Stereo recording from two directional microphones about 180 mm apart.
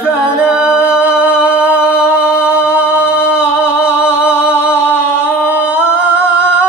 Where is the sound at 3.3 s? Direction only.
5° right (ahead or behind).